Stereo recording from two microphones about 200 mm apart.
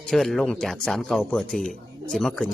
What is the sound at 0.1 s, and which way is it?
Speech, centre (ahead or behind).